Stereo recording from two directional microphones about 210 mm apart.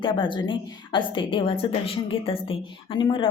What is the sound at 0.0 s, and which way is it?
A woman's voice, 25° left (ahead or behind).